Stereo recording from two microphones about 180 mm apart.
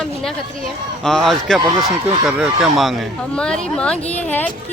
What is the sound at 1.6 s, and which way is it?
Speech, 20° right (ahead or behind).